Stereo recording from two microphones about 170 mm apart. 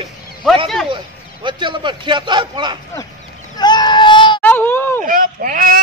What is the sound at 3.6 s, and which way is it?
Child singing, 25° left (ahead or behind).